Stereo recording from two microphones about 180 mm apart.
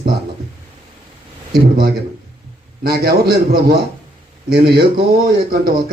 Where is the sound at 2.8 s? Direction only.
60° right (ahead or behind).